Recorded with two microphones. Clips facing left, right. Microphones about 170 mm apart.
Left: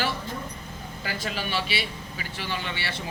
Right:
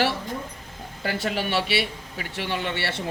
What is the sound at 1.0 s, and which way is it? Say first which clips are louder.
A man's voice: right 6 dB; 60° right (ahead or behind).